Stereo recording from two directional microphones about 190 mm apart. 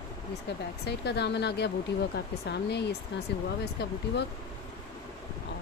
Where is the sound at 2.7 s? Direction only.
60° left (ahead or behind).